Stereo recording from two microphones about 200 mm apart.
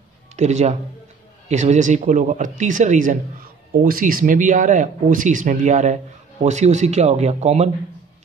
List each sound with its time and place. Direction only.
0.4 s speech: 35° right (ahead or behind)